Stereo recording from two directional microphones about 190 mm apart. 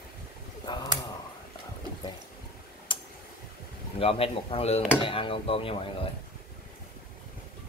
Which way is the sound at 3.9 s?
30° left (ahead or behind).